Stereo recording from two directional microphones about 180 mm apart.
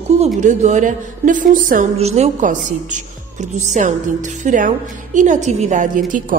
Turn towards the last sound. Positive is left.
turn(degrees=-45)  # may be behind; listen again after turning